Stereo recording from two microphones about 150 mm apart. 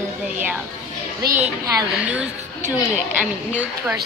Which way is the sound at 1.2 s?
90° right.